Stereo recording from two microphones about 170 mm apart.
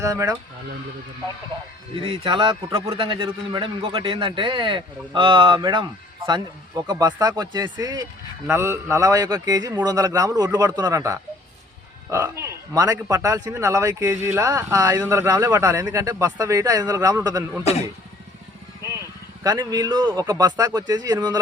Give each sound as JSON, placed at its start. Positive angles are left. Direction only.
{"t": 0.0, "sound": "speech", "side_deg": -20}
{"t": 2.0, "sound": "speech", "side_deg": -30}
{"t": 18.9, "sound": "vehicle", "side_deg": -15}
{"t": 20.1, "sound": "speech", "side_deg": -20}